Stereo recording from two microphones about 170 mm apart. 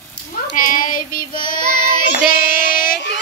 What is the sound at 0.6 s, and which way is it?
Child singing, 55° left (ahead or behind).